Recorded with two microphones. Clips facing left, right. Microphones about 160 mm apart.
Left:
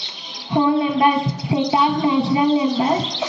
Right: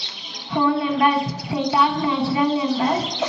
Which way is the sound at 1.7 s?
20° left (ahead or behind).